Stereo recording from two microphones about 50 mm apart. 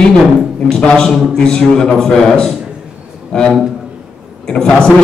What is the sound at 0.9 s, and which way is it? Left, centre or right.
A man's voice, centre.